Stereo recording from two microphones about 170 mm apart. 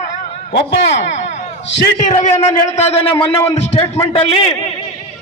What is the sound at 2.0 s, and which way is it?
A man's voice, 45° left (ahead or behind).